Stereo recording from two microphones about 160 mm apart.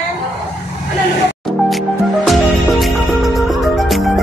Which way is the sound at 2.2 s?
Centre (ahead or behind).